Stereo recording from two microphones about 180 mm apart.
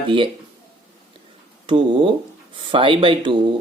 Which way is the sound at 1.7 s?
30° right (ahead or behind).